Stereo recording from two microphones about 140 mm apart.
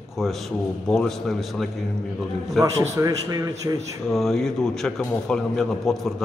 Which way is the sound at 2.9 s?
25° right (ahead or behind).